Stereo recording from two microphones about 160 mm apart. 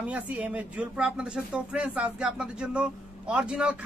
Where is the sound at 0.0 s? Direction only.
10° right (ahead or behind).